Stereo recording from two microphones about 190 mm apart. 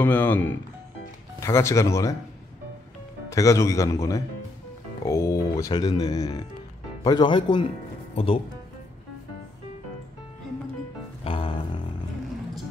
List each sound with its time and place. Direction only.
0.0 s speech: 10° left (ahead or behind)
3.3 s speech: 15° left (ahead or behind)
11.2 s music: 30° left (ahead or behind)